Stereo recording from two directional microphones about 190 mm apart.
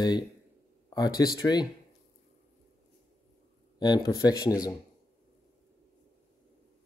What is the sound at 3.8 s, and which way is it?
Speech, 20° left (ahead or behind).